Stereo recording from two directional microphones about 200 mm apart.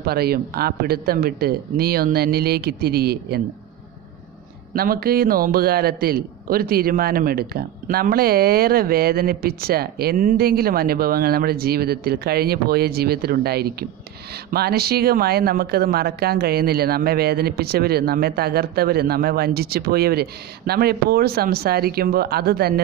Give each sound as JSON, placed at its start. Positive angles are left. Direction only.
{"t": 0.0, "sound": "a man's voice", "side_deg": -50}
{"t": 4.7, "sound": "a man's voice", "side_deg": -50}